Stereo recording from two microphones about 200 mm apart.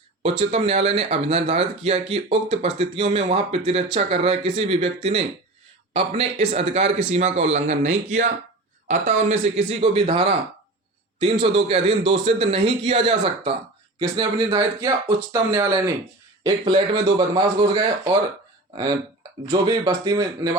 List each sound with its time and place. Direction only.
0.2 s speech: 30° right (ahead or behind)
9.4 s speech: 30° right (ahead or behind)
11.3 s speech: 30° right (ahead or behind)
19.5 s speech: 20° right (ahead or behind)